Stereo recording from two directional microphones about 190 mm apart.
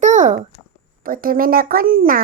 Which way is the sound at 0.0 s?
40° right (ahead or behind).